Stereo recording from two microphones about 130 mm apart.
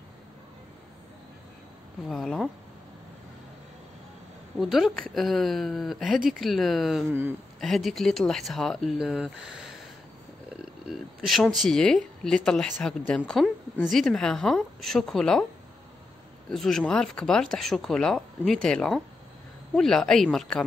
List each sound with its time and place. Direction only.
2.0 s speech: centre (ahead or behind)
4.6 s speech: centre (ahead or behind)
7.1 s speech: 15° right (ahead or behind)
7.6 s speech: centre (ahead or behind)
16.4 s speech: centre (ahead or behind)